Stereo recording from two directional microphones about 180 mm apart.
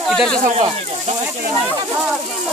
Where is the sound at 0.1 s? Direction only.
Centre (ahead or behind).